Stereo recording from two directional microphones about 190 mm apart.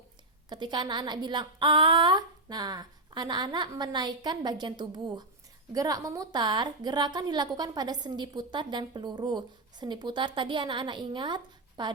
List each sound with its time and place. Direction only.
0.5 s speech: 25° right (ahead or behind)